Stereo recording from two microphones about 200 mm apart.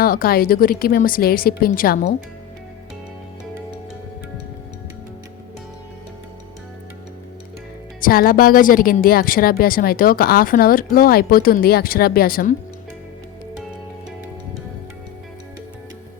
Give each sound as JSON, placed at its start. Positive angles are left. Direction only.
{"t": 0.0, "sound": "a woman's voice", "side_deg": 45}
{"t": 8.0, "sound": "a woman's voice", "side_deg": 45}